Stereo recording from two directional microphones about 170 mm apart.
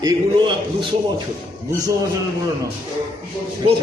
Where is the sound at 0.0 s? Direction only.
30° right (ahead or behind).